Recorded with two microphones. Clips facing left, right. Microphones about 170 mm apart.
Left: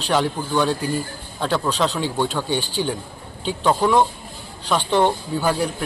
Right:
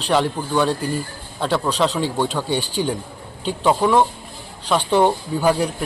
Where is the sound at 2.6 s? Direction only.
35° right (ahead or behind).